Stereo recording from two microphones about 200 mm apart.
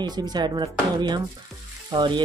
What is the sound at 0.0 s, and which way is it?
Speech, 20° right (ahead or behind).